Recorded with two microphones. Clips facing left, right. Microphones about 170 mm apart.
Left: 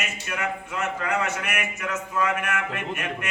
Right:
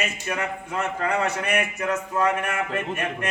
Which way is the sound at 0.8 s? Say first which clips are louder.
Right 3 dB; 30° right (ahead or behind).